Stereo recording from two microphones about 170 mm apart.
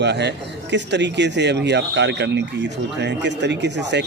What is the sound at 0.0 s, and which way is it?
Speech, 90° right.